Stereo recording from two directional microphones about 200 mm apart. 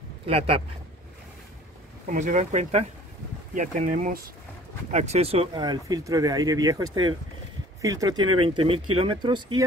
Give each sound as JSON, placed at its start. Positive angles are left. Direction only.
{"t": 0.3, "sound": "speech", "side_deg": -30}
{"t": 2.0, "sound": "speech", "side_deg": -40}
{"t": 4.9, "sound": "speech", "side_deg": -30}